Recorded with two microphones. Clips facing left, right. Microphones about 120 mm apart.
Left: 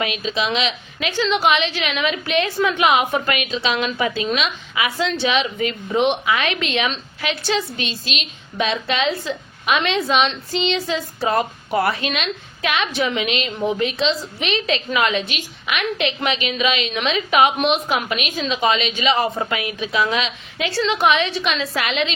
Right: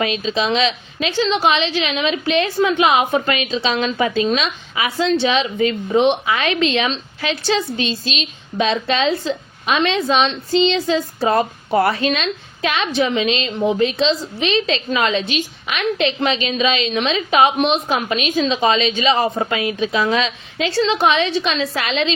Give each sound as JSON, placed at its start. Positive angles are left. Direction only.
{"t": 0.0, "sound": "a woman's voice", "side_deg": -35}